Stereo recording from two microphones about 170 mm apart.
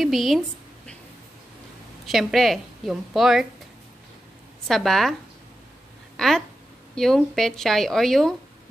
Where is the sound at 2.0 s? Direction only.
Centre (ahead or behind).